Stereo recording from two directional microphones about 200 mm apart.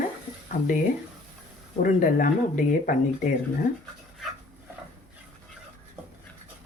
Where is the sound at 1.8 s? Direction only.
45° left (ahead or behind).